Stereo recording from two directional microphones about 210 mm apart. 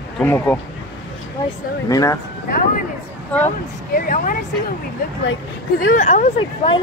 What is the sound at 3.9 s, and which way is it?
Speech, 40° left (ahead or behind).